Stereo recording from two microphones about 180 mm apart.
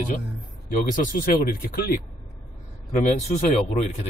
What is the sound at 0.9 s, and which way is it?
Speech, 50° left (ahead or behind).